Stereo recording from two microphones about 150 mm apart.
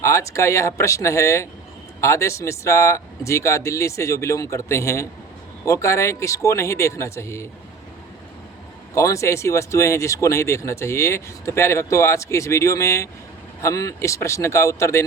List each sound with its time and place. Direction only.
0.0 s speech: 20° left (ahead or behind)
9.0 s speech: 20° left (ahead or behind)